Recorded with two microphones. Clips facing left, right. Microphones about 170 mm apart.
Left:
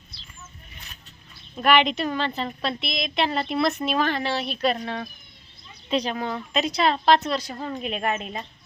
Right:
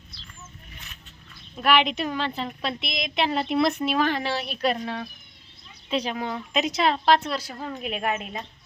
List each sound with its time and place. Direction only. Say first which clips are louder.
1.5 s a woman's voice: left 2 dB; 5° right (ahead or behind)